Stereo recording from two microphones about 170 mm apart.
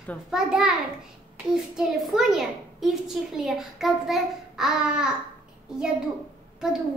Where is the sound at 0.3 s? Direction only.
5° right (ahead or behind).